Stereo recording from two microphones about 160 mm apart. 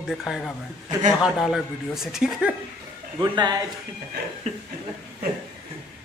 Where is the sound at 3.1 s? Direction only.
25° right (ahead or behind).